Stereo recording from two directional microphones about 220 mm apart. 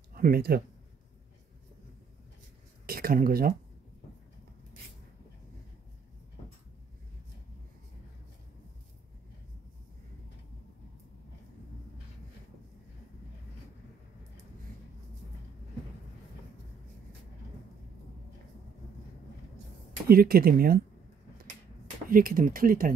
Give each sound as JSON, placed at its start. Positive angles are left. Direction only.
{"t": 0.1, "sound": "speech", "side_deg": -45}
{"t": 2.9, "sound": "speech", "side_deg": -40}
{"t": 20.1, "sound": "speech", "side_deg": -40}
{"t": 22.1, "sound": "speech", "side_deg": -40}